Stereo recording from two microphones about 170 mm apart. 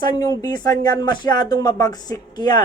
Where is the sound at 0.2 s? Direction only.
20° left (ahead or behind).